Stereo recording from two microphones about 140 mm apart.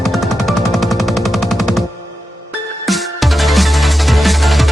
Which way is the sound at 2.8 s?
Centre (ahead or behind).